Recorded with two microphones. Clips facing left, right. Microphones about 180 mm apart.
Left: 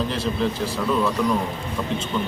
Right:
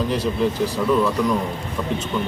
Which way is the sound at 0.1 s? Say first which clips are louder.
Right 3 dB; 15° right (ahead or behind).